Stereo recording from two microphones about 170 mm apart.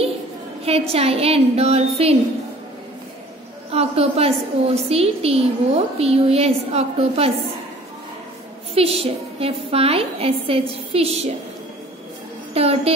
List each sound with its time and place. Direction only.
0.7 s a woman's voice: 35° right (ahead or behind)
3.7 s a woman's voice: 35° right (ahead or behind)
8.7 s a woman's voice: 35° right (ahead or behind)
12.5 s a woman's voice: 35° right (ahead or behind)